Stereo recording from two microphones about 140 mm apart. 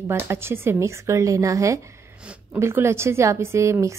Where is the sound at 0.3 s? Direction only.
15° right (ahead or behind).